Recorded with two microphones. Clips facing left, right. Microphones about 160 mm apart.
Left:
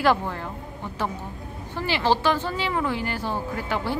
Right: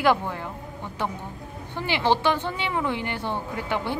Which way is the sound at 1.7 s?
20° right (ahead or behind).